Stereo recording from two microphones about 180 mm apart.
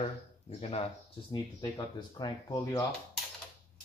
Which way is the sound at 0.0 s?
35° left (ahead or behind).